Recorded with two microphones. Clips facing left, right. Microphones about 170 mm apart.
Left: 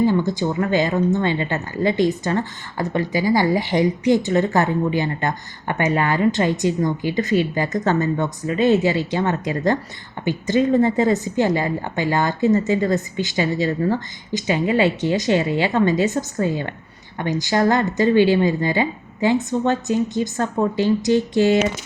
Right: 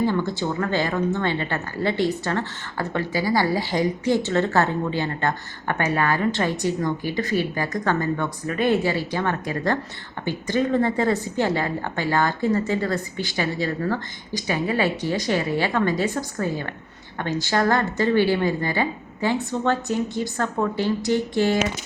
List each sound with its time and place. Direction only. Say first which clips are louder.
0.0 s a woman's voice: left 4 dB; 15° left (ahead or behind)